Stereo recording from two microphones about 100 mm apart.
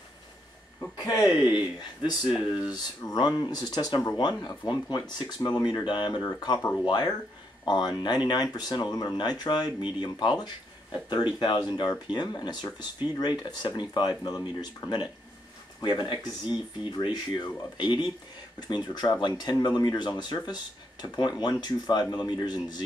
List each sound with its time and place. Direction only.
1.3 s speech: 50° left (ahead or behind)